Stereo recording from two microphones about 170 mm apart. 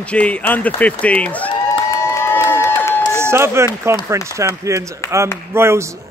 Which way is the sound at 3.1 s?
15° right (ahead or behind).